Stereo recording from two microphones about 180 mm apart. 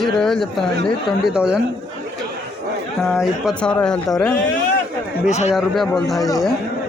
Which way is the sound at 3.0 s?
Centre (ahead or behind).